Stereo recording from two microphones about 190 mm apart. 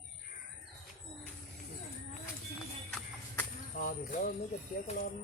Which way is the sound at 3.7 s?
45° left (ahead or behind).